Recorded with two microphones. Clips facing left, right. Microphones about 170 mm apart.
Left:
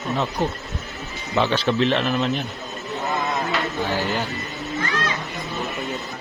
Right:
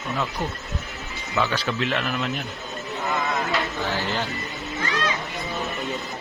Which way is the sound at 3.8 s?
15° left (ahead or behind).